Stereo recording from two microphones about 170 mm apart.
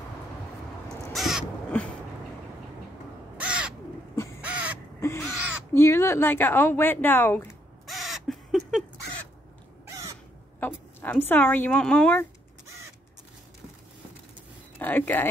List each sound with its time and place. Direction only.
1.1 s crow: centre (ahead or behind)
3.3 s crow: 5° right (ahead or behind)
5.0 s speech: 15° left (ahead or behind)
7.8 s crow: centre (ahead or behind)
9.8 s crow: 20° right (ahead or behind)
11.0 s a woman's voice: 10° left (ahead or behind)
14.8 s speech: 10° left (ahead or behind)